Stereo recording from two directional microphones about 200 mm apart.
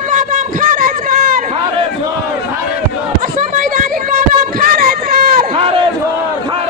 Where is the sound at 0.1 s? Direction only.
40° right (ahead or behind).